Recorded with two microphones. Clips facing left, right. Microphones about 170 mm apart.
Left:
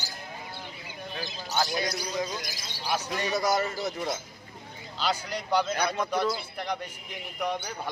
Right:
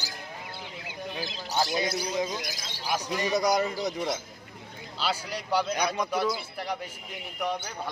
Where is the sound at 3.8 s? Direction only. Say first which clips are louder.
Right 1 dB; 5° left (ahead or behind).